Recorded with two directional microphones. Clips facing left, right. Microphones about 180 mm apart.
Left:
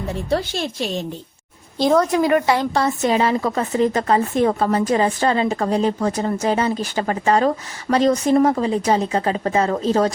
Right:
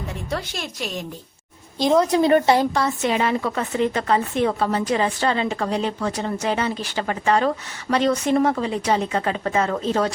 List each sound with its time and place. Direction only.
0.1 s a woman's voice: 30° left (ahead or behind)
2.0 s speech: 30° right (ahead or behind)
2.8 s a woman's voice: 40° left (ahead or behind)